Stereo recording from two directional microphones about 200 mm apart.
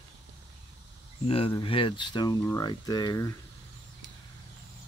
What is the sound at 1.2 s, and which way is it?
Speech, 30° left (ahead or behind).